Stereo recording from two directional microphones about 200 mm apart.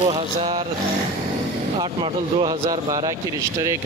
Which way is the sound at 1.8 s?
25° right (ahead or behind).